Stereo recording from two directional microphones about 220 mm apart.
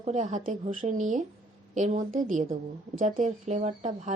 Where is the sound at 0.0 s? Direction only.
35° right (ahead or behind).